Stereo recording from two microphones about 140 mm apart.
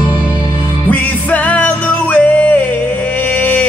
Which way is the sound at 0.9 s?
10° left (ahead or behind).